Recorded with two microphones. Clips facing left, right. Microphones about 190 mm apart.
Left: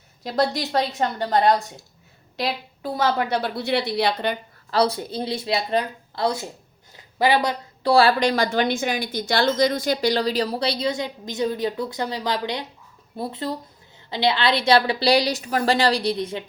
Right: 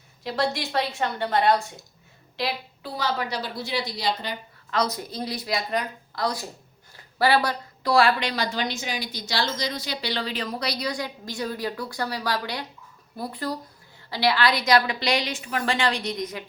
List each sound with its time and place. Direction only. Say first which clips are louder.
0.2 s a woman's voice: left 4 dB; 40° left (ahead or behind); by 4.4 s 60° left (ahead or behind)
4.7 s a woman's voice: left 5 dB; 30° left (ahead or behind)
6.9 s a sound: left 1 dB; 20° left (ahead or behind)
7.9 s speech: left 4 dB; 30° left (ahead or behind)
8.3 s a woman's voice: left 7 dB; 50° left (ahead or behind); by 16.4 s 30° left (ahead or behind)